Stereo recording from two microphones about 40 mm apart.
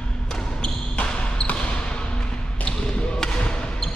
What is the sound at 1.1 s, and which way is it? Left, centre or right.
Basketball bounce, left.